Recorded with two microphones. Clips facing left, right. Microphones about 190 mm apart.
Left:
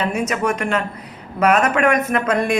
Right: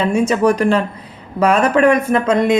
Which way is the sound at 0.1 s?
30° right (ahead or behind).